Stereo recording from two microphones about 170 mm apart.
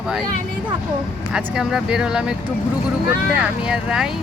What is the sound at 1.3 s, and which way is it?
Speech, 5° right (ahead or behind).